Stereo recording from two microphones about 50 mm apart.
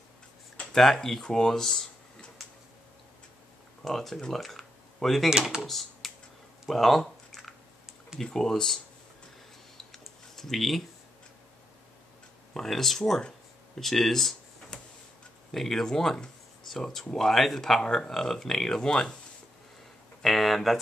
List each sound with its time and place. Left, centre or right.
0.7 s speech: centre
3.8 s speech: centre
4.4 s a sound: centre
5.6 s speech: centre
6.7 s typing: centre
8.2 s speech: centre
9.8 s a sound: centre
12.5 s speech: centre
20.2 s a sound: centre